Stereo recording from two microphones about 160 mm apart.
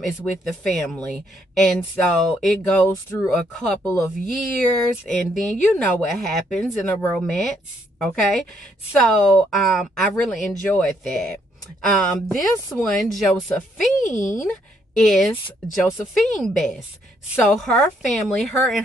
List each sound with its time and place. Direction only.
0.2 s speech: 5° left (ahead or behind)
2.8 s speech: 15° left (ahead or behind)
3.5 s speech: 5° left (ahead or behind)
3.8 s speech: 20° left (ahead or behind)
4.7 s speech: 5° left (ahead or behind)